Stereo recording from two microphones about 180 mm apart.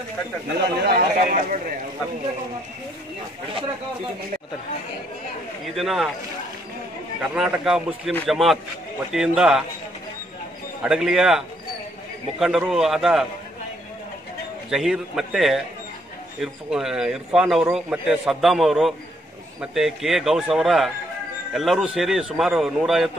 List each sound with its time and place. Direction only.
0.8 s speech: 55° right (ahead or behind)
5.8 s a man's voice: centre (ahead or behind)
7.2 s a man's voice: 5° right (ahead or behind)
10.8 s a man's voice: 5° right (ahead or behind)
14.7 s a man's voice: 5° right (ahead or behind)